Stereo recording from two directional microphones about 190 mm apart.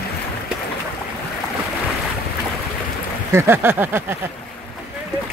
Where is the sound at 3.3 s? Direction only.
15° right (ahead or behind).